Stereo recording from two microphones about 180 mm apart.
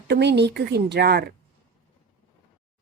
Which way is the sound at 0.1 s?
70° right (ahead or behind).